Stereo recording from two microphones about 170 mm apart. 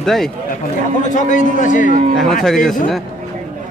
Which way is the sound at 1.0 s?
50° left (ahead or behind).